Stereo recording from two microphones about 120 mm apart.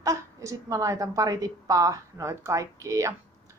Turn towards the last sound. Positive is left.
turn(degrees=-25)  # may be behind; listen again after turning